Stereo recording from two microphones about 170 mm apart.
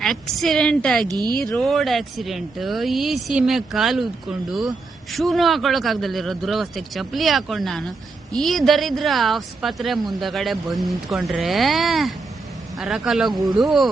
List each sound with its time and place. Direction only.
0.0 s speech: centre (ahead or behind)
1.0 s speech: 25° right (ahead or behind)
1.5 s speech: centre (ahead or behind)